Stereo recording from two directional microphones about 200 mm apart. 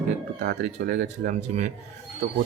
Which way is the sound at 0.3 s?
50° right (ahead or behind).